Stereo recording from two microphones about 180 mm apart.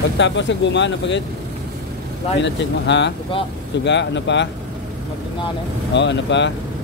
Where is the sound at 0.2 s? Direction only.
90° left.